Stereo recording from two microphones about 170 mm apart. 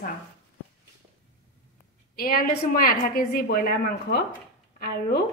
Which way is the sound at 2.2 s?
60° left (ahead or behind).